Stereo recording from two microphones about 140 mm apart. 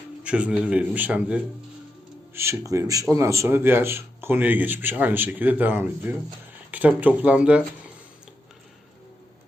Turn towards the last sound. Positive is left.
turn(degrees=-10)  # may be behind; listen again after turning